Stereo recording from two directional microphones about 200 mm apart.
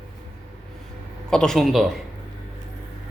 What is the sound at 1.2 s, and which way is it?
Speech, 5° left (ahead or behind).